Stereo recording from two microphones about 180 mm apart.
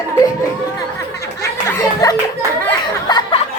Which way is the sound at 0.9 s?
15° left (ahead or behind).